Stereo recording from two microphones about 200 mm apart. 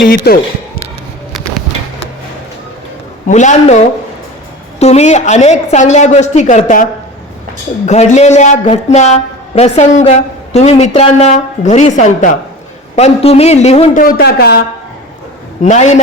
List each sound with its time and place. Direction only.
0.0 s speech: 50° left (ahead or behind)
3.2 s a woman's voice: 35° left (ahead or behind)
7.9 s a woman's voice: 35° left (ahead or behind)
14.0 s speech: 50° left (ahead or behind)
15.6 s a woman's voice: 35° left (ahead or behind)